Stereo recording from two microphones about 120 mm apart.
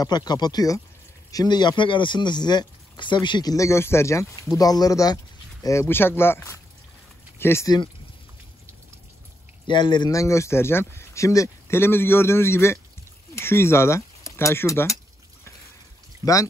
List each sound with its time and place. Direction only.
0.0 s speech: 35° left (ahead or behind)
3.5 s speech: 25° left (ahead or behind)
9.7 s speech: 40° left (ahead or behind)
10.1 s speech: 25° left (ahead or behind)